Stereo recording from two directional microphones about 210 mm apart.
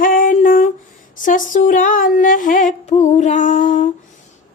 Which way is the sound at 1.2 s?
40° left (ahead or behind).